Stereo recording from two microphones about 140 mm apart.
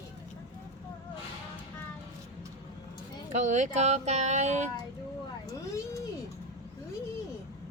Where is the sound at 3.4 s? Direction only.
60° right (ahead or behind).